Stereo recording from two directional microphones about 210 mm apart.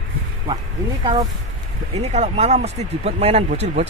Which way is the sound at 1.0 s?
20° right (ahead or behind).